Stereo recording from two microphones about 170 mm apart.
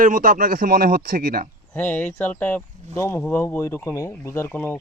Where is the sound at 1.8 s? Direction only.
10° left (ahead or behind).